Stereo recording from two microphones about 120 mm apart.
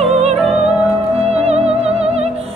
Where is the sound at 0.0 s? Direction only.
60° right (ahead or behind).